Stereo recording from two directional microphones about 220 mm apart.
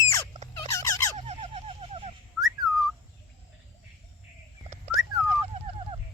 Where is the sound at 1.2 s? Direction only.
25° right (ahead or behind).